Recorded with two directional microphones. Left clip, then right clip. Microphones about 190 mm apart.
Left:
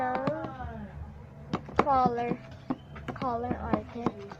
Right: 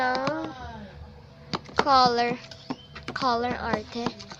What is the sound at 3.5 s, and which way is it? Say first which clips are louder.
Speech: right 4 dB; 45° right (ahead or behind).